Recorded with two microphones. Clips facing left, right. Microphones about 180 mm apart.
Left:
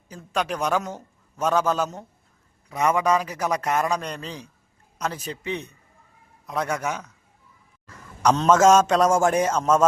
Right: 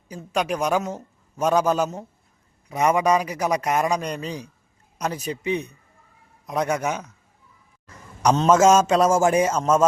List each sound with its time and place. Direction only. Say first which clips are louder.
0.1 s a man's voice: right 2 dB; 10° right (ahead or behind)
7.9 s a sound: right 1 dB; 15° right (ahead or behind)
8.4 s a man's voice: even; 10° right (ahead or behind)